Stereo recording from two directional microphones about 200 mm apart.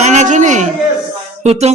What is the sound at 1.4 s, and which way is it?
Music, 30° right (ahead or behind).